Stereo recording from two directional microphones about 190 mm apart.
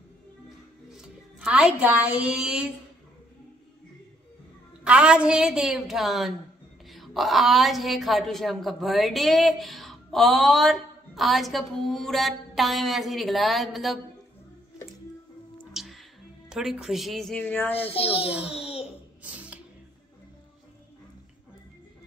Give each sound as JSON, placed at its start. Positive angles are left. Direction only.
{"t": 0.8, "sound": "a woman's voice", "side_deg": -5}
{"t": 4.8, "sound": "a woman's voice", "side_deg": -5}
{"t": 15.7, "sound": "speech", "side_deg": 0}
{"t": 17.9, "sound": "a child's voice", "side_deg": 30}
{"t": 18.3, "sound": "a woman's voice", "side_deg": -5}
{"t": 19.2, "sound": "music", "side_deg": -5}